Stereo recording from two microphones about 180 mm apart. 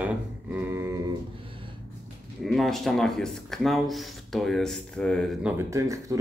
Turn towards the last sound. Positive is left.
turn(degrees=-15)  # may be behind; listen again after turning